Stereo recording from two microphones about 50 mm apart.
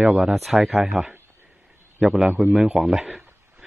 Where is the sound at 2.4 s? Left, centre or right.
Centre.